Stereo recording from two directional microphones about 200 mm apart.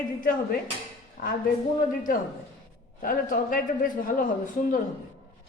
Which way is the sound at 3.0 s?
45° left (ahead or behind).